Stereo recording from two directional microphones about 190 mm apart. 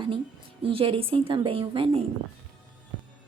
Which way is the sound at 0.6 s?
30° right (ahead or behind).